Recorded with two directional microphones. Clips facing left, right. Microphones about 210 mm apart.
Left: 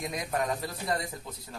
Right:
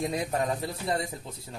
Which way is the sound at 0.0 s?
30° right (ahead or behind).